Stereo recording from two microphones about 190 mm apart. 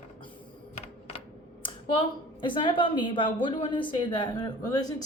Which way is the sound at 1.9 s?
25° left (ahead or behind).